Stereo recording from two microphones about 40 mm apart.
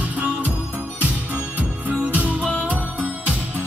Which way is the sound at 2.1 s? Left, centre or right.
Right.